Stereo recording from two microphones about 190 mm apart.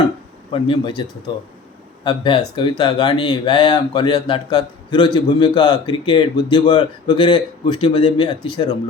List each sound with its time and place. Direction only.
0.5 s speech: 25° left (ahead or behind)
2.0 s speech: 25° left (ahead or behind)